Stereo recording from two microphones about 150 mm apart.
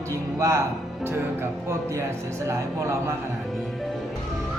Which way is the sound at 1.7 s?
20° right (ahead or behind).